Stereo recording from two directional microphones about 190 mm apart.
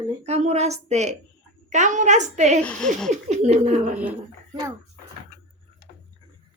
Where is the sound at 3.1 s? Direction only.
35° right (ahead or behind).